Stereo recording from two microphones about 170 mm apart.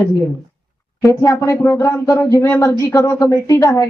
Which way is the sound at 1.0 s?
20° left (ahead or behind).